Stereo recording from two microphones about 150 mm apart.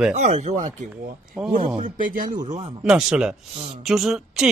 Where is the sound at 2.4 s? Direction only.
50° right (ahead or behind).